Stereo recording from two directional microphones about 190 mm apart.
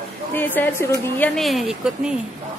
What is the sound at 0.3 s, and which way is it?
A woman's voice, 10° left (ahead or behind).